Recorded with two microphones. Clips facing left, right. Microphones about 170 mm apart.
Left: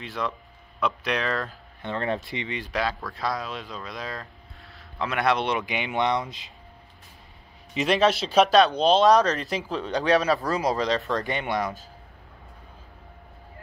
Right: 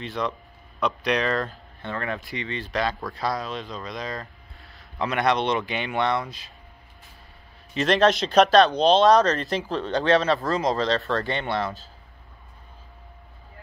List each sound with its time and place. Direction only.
0.0 s speech: 5° left (ahead or behind)
2.0 s speech: 25° left (ahead or behind)
7.7 s speech: 10° left (ahead or behind)